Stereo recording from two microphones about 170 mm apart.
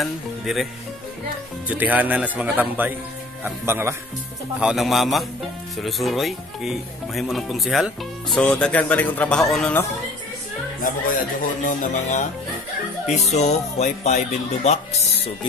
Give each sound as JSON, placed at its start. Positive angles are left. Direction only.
{"t": 0.0, "sound": "speech", "side_deg": 0}
{"t": 1.7, "sound": "speech", "side_deg": -10}
{"t": 4.6, "sound": "speech", "side_deg": -5}
{"t": 11.6, "sound": "speech", "side_deg": 50}